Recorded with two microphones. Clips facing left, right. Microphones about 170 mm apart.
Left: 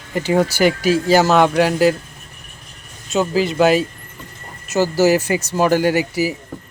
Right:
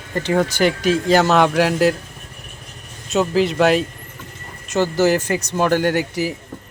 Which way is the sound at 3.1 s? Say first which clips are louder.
Even; centre (ahead or behind).